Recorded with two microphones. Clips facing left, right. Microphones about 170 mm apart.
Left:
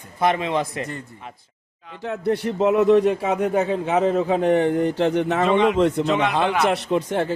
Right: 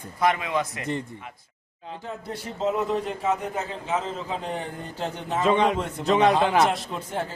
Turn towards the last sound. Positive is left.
turn(degrees=75)  # may be behind; listen again after turning